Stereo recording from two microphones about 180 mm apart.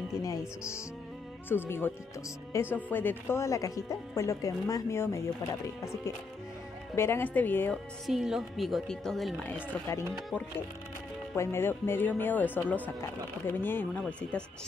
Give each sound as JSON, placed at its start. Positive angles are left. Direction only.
{"t": 0.2, "sound": "speech", "side_deg": 15}
{"t": 7.0, "sound": "speech", "side_deg": 15}
{"t": 8.1, "sound": "speech", "side_deg": 0}